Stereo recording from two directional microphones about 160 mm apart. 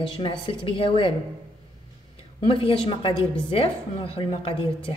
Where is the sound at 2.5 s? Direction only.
35° left (ahead or behind).